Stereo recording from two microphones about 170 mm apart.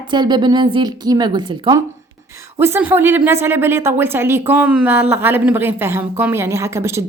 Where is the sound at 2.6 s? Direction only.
10° right (ahead or behind).